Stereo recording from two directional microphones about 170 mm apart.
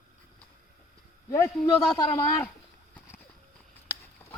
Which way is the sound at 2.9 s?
15° left (ahead or behind).